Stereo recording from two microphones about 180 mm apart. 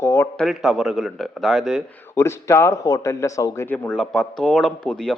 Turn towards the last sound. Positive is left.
turn(degrees=5)  # may be behind; listen again after turning